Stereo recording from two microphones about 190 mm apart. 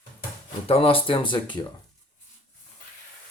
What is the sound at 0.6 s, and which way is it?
Speech, 30° left (ahead or behind).